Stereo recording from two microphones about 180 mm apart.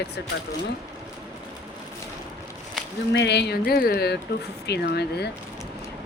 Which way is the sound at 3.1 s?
70° left (ahead or behind).